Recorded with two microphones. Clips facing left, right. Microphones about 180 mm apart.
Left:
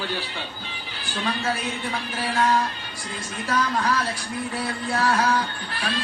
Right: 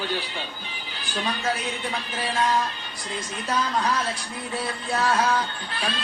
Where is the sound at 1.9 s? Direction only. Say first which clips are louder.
Left 1 dB; 20° right (ahead or behind).